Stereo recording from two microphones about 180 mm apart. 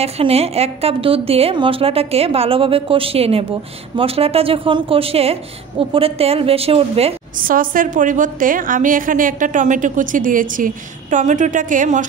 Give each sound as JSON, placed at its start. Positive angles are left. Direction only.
{"t": 0.0, "sound": "a woman's voice", "side_deg": -35}
{"t": 7.4, "sound": "a woman's voice", "side_deg": -50}